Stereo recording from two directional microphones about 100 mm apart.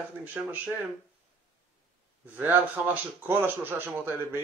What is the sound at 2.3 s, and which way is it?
A man's voice, 20° right (ahead or behind).